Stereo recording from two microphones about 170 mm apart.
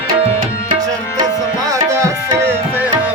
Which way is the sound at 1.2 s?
20° right (ahead or behind).